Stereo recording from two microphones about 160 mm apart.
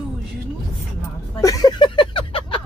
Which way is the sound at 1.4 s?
20° left (ahead or behind).